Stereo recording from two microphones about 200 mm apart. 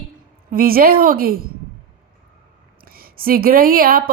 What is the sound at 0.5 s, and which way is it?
A woman's voice, 45° right (ahead or behind).